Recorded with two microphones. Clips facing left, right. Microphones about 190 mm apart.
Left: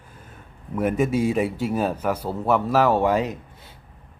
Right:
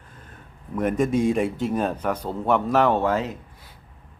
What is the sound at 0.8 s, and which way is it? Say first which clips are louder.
A man's voice: even; 5° left (ahead or behind).